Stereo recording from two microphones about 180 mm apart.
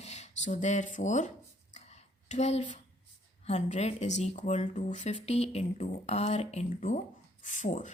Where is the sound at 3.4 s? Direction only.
40° left (ahead or behind).